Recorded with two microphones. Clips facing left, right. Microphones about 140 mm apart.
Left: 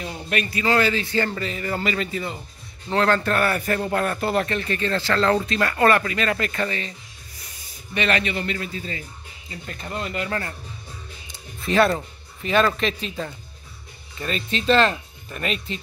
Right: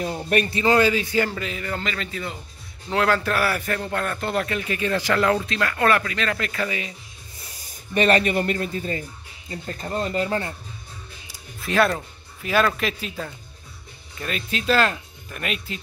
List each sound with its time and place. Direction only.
0.1 s speech: 35° right (ahead or behind)
0.6 s a man's voice: 20° right (ahead or behind)
1.3 s a man's voice: centre (ahead or behind)
5.4 s a man's voice: centre (ahead or behind)
7.9 s speech: 40° right (ahead or behind)
11.6 s speech: centre (ahead or behind)
14.1 s a man's voice: 5° right (ahead or behind)